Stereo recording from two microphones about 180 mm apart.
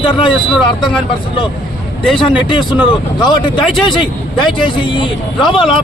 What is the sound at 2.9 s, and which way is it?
Speech, 25° left (ahead or behind).